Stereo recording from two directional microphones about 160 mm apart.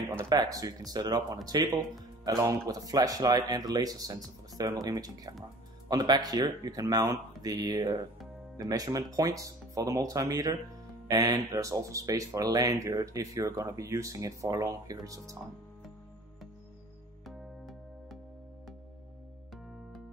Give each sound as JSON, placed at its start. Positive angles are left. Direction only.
{"t": 0.5, "sound": "speech", "side_deg": -20}